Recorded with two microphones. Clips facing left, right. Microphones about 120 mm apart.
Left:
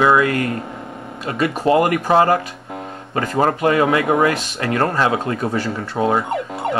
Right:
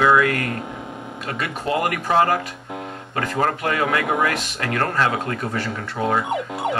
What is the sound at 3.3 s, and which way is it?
Speech, 20° left (ahead or behind).